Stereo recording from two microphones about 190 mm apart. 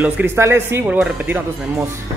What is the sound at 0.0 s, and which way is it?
Speech, 10° right (ahead or behind).